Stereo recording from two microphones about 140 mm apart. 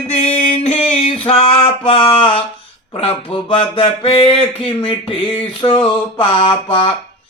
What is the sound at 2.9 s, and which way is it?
Speech, 40° left (ahead or behind).